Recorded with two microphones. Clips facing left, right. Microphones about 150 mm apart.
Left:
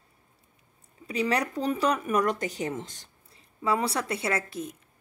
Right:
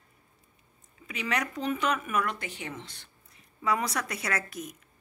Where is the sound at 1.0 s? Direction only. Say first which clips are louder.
Left 5 dB; 35° left (ahead or behind).